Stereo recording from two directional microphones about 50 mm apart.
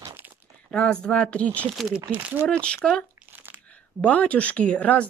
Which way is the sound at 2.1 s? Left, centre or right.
Right.